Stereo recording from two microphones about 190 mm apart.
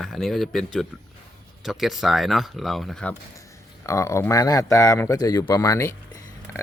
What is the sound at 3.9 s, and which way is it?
Speech, 15° left (ahead or behind).